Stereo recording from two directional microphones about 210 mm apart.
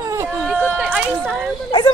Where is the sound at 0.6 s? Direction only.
5° left (ahead or behind).